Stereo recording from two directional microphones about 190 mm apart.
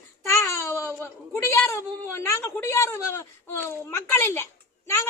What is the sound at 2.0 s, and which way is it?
A woman's voice, 15° left (ahead or behind).